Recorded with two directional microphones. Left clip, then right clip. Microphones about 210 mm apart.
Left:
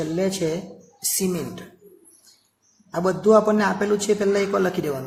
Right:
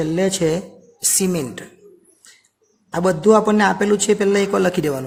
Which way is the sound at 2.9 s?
55° right (ahead or behind).